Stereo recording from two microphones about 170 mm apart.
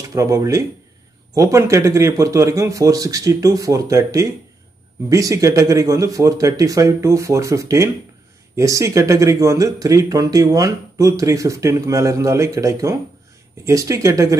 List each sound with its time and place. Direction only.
0.1 s speech: 20° right (ahead or behind)